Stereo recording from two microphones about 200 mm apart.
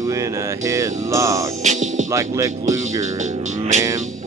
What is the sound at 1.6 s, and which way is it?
Music, 40° right (ahead or behind).